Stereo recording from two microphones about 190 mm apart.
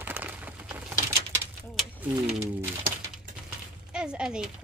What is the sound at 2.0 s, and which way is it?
Speech, 10° right (ahead or behind).